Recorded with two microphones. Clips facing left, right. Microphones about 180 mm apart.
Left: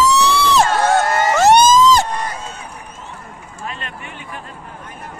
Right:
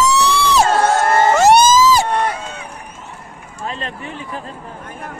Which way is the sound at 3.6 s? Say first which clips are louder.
Right 4 dB; 30° right (ahead or behind).